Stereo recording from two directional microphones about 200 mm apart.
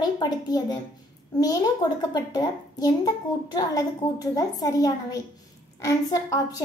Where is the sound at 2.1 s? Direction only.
20° left (ahead or behind).